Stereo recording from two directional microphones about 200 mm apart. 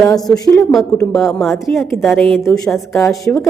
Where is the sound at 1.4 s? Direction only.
Centre (ahead or behind).